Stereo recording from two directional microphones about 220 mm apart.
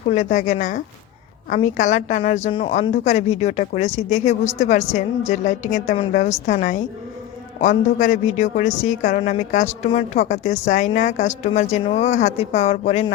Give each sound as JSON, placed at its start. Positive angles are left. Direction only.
{"t": 0.1, "sound": "a woman's voice", "side_deg": 35}